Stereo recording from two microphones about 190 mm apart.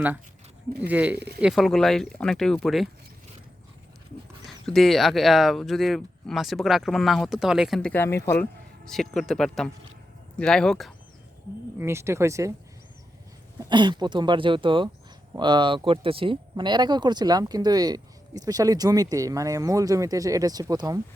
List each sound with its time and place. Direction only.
0.8 s speech: 10° right (ahead or behind)
4.4 s speech: centre (ahead or behind)
8.9 s speech: centre (ahead or behind)
11.8 s speech: 15° right (ahead or behind)
13.6 s speech: 25° right (ahead or behind)